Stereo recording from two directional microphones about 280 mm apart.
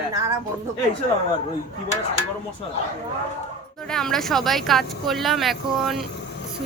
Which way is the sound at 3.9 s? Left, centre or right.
Centre.